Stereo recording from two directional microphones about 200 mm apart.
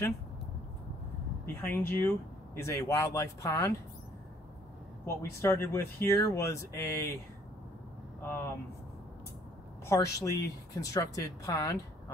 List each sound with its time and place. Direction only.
1.4 s speech: 10° left (ahead or behind)
5.0 s speech: 15° left (ahead or behind)
8.2 s speech: 10° left (ahead or behind)
9.8 s speech: 15° left (ahead or behind)